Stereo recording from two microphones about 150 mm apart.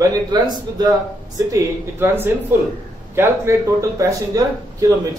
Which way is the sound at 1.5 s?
15° right (ahead or behind).